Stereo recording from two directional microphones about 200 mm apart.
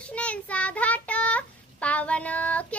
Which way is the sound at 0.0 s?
5° left (ahead or behind).